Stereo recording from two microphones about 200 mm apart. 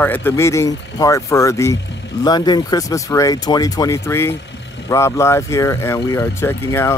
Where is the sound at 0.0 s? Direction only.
10° left (ahead or behind).